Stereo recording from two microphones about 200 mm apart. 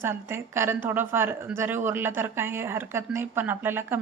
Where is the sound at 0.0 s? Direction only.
10° right (ahead or behind).